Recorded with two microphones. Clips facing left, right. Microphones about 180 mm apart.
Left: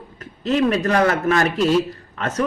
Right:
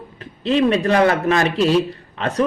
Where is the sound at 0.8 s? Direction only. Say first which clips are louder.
Right 2 dB; 30° right (ahead or behind).